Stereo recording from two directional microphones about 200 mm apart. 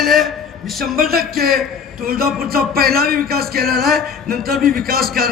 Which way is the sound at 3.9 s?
Centre (ahead or behind).